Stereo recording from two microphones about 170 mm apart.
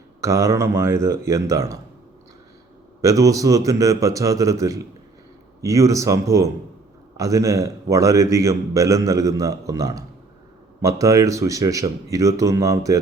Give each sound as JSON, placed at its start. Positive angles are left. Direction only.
{"t": 0.2, "sound": "speech", "side_deg": -15}
{"t": 3.0, "sound": "a man's voice", "side_deg": -20}